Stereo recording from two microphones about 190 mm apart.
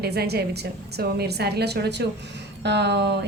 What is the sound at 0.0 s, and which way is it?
A woman's voice, 55° right (ahead or behind).